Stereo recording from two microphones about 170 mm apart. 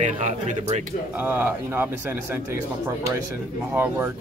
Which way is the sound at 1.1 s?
10° right (ahead or behind).